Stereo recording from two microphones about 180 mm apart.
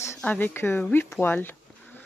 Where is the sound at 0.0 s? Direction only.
10° left (ahead or behind).